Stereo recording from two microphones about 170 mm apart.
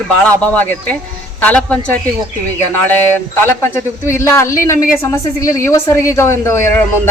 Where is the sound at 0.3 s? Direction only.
10° left (ahead or behind).